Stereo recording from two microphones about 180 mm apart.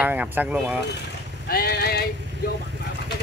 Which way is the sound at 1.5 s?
55° left (ahead or behind).